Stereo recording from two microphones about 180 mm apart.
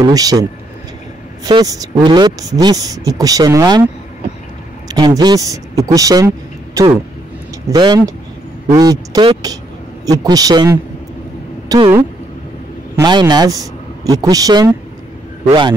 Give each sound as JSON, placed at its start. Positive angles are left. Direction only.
{"t": 0.0, "sound": "speech", "side_deg": -20}
{"t": 4.8, "sound": "speech", "side_deg": -20}
{"t": 11.7, "sound": "speech", "side_deg": -20}
{"t": 12.9, "sound": "a man's voice", "side_deg": -20}